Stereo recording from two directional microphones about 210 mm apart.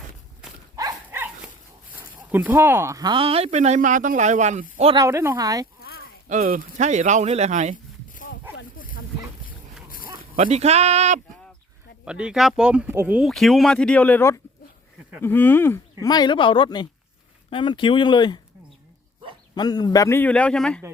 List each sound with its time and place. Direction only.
0.8 s livestock: 15° right (ahead or behind)
2.0 s speech: 10° right (ahead or behind); by 5.0 s 25° right (ahead or behind)
5.0 s speech: 10° right (ahead or behind)
6.2 s speech: 40° right (ahead or behind)
8.1 s a sound: 40° left (ahead or behind)
10.3 s speech: 30° right (ahead or behind)
12.0 s speech: 5° right (ahead or behind); by 18.3 s 20° left (ahead or behind)
19.5 s a man's voice: 20° left (ahead or behind)